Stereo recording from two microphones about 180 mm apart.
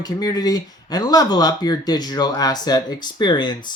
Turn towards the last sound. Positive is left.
turn(degrees=25)  # may be behind; listen again after turning